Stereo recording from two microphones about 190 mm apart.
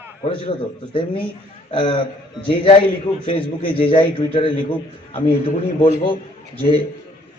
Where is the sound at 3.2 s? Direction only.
30° left (ahead or behind).